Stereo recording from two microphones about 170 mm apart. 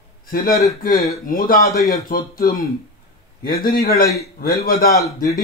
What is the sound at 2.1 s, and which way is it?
Speech, 60° left (ahead or behind).